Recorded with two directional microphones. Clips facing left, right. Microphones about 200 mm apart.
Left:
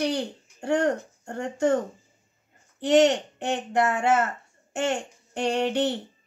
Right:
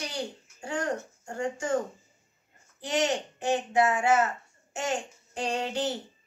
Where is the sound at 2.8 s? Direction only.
65° left (ahead or behind).